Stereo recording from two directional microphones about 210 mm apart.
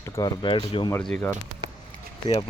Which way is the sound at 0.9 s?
5° left (ahead or behind).